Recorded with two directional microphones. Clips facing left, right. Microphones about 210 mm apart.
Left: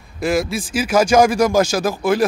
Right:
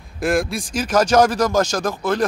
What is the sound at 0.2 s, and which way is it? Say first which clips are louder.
Speech: left 1 dB; centre (ahead or behind).